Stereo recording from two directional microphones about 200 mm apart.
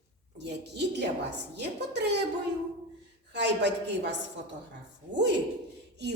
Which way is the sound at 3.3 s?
60° right (ahead or behind).